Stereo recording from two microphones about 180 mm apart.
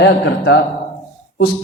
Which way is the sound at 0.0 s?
70° left (ahead or behind).